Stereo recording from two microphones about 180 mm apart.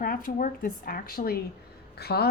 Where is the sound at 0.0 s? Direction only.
50° left (ahead or behind).